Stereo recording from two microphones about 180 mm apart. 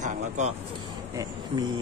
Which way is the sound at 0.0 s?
40° right (ahead or behind).